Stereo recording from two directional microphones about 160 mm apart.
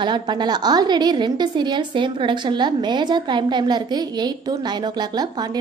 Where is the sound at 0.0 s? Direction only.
30° right (ahead or behind).